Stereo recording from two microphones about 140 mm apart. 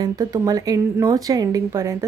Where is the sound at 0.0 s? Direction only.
25° right (ahead or behind).